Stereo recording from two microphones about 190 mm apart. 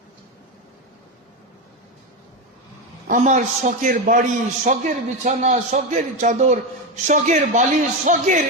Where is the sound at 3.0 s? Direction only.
45° right (ahead or behind).